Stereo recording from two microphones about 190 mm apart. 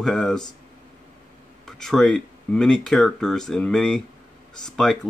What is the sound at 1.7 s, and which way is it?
Speech, centre (ahead or behind).